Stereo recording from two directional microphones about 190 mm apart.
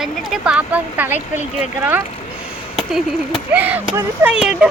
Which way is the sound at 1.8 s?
10° right (ahead or behind).